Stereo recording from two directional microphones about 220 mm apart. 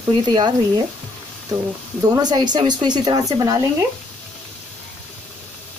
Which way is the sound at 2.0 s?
20° right (ahead or behind).